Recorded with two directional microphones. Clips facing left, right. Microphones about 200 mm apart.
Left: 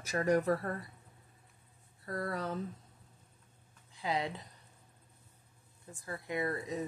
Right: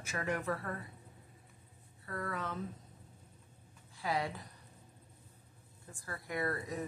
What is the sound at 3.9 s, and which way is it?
Speech, 20° left (ahead or behind).